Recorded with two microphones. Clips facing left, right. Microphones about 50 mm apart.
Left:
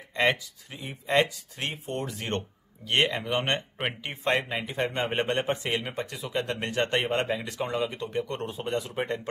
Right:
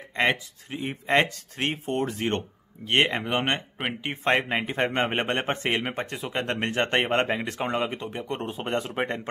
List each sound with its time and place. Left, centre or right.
0.1 s speech: right
0.7 s a man's voice: right
8.1 s a man's voice: right